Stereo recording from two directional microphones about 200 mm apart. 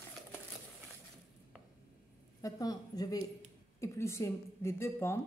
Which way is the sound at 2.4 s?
15° left (ahead or behind).